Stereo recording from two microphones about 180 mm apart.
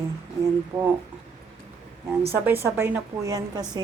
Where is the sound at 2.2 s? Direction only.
10° right (ahead or behind).